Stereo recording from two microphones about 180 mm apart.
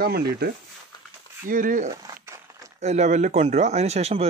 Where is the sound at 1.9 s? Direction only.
20° right (ahead or behind).